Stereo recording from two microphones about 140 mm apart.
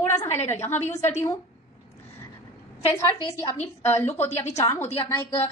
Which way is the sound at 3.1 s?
20° left (ahead or behind).